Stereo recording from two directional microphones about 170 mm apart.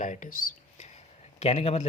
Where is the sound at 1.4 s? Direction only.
40° left (ahead or behind).